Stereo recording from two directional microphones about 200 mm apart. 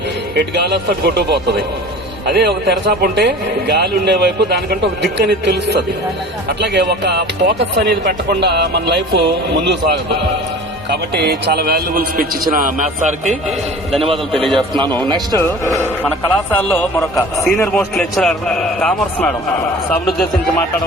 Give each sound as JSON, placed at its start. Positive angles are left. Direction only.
{"t": 0.3, "sound": "a man's voice", "side_deg": -55}
{"t": 14.0, "sound": "a man's voice", "side_deg": -25}
{"t": 15.4, "sound": "a man's voice", "side_deg": 10}
{"t": 17.7, "sound": "a man's voice", "side_deg": 5}